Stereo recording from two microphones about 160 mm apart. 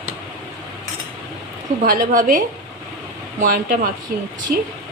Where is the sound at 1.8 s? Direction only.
55° right (ahead or behind).